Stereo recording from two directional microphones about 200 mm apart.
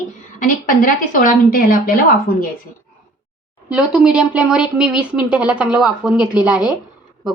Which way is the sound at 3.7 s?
5° right (ahead or behind).